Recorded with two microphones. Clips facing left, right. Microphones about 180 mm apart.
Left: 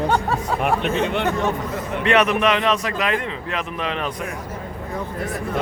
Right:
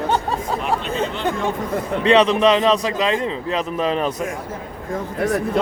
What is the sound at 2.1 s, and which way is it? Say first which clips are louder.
A man's voice: right 4 dB; 30° right (ahead or behind).